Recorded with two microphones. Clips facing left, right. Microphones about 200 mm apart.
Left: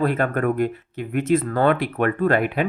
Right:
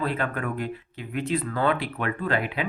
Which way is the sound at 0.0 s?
45° left (ahead or behind).